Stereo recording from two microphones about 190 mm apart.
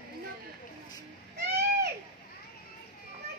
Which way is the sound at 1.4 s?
60° right (ahead or behind).